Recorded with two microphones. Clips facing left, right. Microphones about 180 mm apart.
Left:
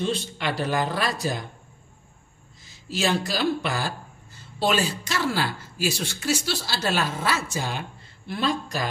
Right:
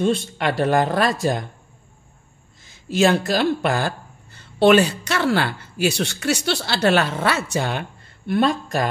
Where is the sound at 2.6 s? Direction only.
55° right (ahead or behind).